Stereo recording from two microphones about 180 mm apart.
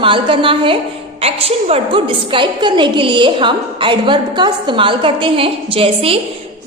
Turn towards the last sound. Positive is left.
turn(degrees=-30)  # may be behind; listen again after turning